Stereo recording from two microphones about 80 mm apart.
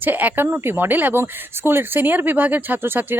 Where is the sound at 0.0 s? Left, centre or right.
Right.